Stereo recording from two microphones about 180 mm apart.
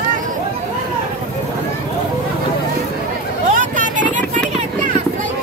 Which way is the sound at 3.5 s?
45° right (ahead or behind).